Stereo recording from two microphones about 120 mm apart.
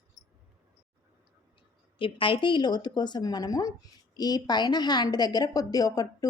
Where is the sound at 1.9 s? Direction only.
45° left (ahead or behind).